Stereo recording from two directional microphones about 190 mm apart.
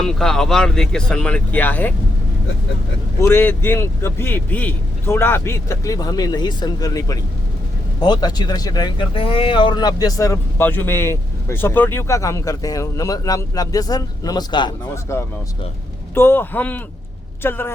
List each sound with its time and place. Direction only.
0.0 s speech: 5° left (ahead or behind)
3.2 s a man's voice: 10° left (ahead or behind)